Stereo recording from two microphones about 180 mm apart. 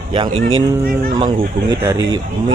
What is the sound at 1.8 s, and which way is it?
Speech, 20° right (ahead or behind).